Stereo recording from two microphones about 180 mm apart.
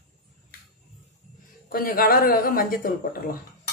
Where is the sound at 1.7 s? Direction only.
55° left (ahead or behind).